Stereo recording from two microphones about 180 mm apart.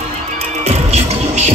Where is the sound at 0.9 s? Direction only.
40° right (ahead or behind).